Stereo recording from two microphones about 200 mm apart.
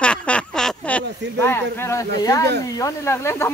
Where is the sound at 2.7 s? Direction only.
15° left (ahead or behind).